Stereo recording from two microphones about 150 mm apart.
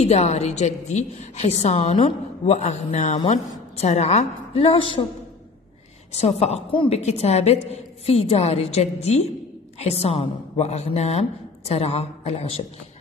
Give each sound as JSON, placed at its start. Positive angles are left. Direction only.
{"t": 0.0, "sound": "a woman's voice", "side_deg": 45}
{"t": 6.1, "sound": "a woman's voice", "side_deg": 45}